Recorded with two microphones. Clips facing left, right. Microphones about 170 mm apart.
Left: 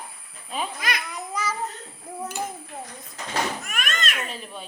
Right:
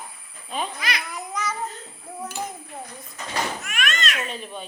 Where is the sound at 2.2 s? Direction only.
10° left (ahead or behind).